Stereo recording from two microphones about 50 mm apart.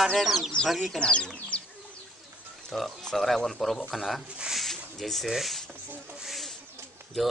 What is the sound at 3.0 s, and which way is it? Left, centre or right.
Speech, centre.